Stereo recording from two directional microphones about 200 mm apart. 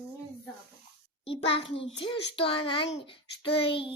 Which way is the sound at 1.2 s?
30° left (ahead or behind).